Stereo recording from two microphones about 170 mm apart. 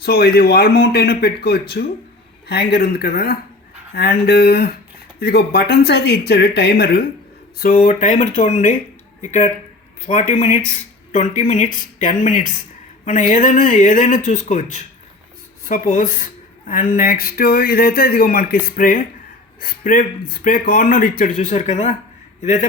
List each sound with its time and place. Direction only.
0.0 s speech: 65° left (ahead or behind)
7.6 s a man's voice: 50° left (ahead or behind)